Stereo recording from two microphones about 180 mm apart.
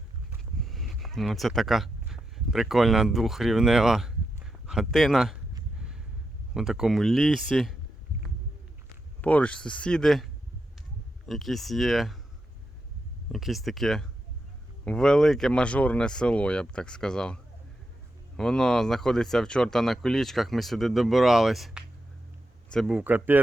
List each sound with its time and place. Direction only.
0.6 s speech: centre (ahead or behind)
4.4 s a sound: 5° right (ahead or behind)
6.5 s speech: centre (ahead or behind)
9.2 s speech: 5° left (ahead or behind)
11.3 s speech: centre (ahead or behind)
13.3 s speech: centre (ahead or behind)